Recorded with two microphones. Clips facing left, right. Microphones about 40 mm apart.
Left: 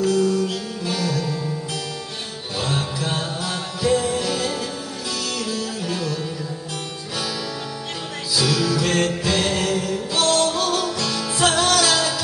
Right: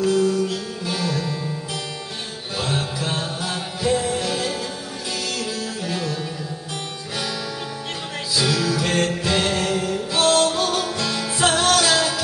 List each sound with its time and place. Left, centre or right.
0.0 s music: centre
2.6 s music: centre
3.0 s music: centre
5.4 s music: centre
8.4 s music: centre